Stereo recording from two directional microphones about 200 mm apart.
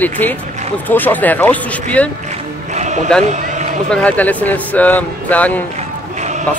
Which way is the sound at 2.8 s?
35° right (ahead or behind).